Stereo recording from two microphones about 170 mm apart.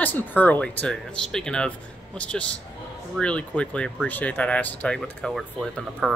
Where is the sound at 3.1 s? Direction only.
5° left (ahead or behind).